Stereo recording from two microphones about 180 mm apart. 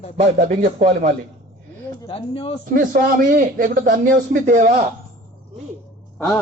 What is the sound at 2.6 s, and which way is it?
Speech, 50° right (ahead or behind).